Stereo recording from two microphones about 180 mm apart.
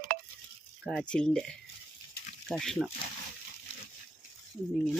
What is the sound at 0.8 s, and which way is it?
Speech, 5° left (ahead or behind).